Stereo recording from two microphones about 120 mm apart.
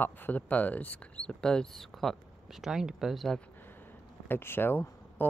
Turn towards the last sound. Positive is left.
turn(degrees=15)  # may be behind; listen again after turning